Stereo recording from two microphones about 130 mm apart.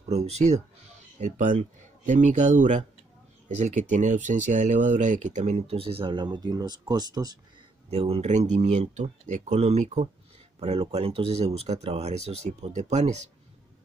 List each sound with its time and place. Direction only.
0.1 s speech: 60° right (ahead or behind)
1.2 s speech: 85° right
1.6 s speech: 70° right (ahead or behind); by 7.3 s 30° right (ahead or behind)
7.9 s speech: 50° right (ahead or behind)